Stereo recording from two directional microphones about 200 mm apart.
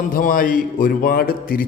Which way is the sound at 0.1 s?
45° left (ahead or behind).